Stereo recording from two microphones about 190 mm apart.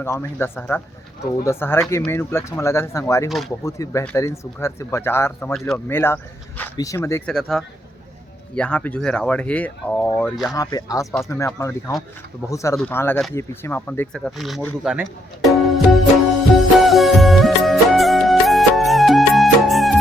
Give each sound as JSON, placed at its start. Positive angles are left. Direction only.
{"t": 0.0, "sound": "speech", "side_deg": 15}
{"t": 3.2, "sound": "speech", "side_deg": 0}
{"t": 3.5, "sound": "speech", "side_deg": 15}
{"t": 7.3, "sound": "speech", "side_deg": 0}
{"t": 10.5, "sound": "speech", "side_deg": 20}
{"t": 14.3, "sound": "speech", "side_deg": 0}
{"t": 15.4, "sound": "music", "side_deg": 0}